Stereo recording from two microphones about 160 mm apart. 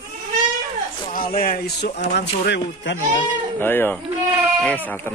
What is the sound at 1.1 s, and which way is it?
Speech, 60° left (ahead or behind).